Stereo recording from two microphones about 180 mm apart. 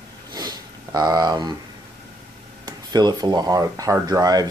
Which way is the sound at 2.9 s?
20° right (ahead or behind).